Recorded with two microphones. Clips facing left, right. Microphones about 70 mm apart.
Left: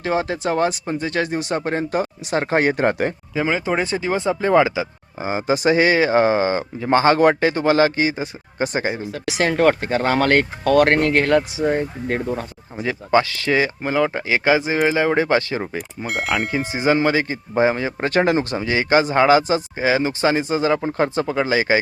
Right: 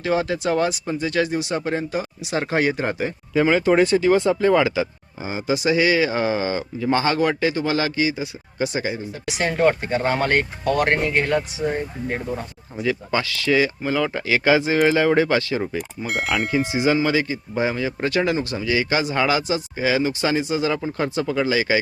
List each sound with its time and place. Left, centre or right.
0.0 s speech: left
3.3 s speech: centre
3.8 s speech: left
9.4 s speech: left
12.8 s speech: left
16.0 s speech: centre
16.7 s speech: left